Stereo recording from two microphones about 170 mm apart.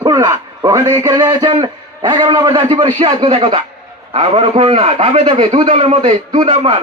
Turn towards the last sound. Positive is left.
turn(degrees=-35)  # may be behind; listen again after turning